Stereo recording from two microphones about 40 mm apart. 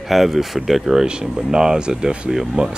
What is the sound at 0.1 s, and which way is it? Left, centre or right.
Speech, centre.